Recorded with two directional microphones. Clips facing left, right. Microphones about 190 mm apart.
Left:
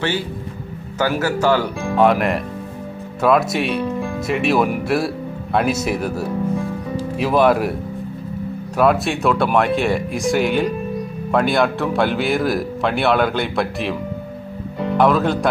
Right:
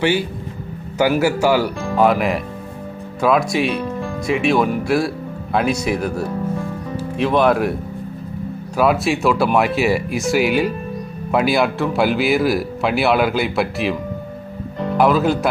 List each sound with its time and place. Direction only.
0.0 s speech: 10° right (ahead or behind)
8.8 s speech: centre (ahead or behind)
14.9 s speech: centre (ahead or behind)